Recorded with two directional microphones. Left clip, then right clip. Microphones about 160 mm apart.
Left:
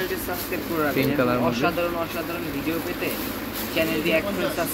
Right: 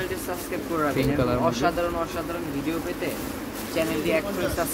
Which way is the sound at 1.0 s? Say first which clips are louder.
Left 2 dB; 5° right (ahead or behind).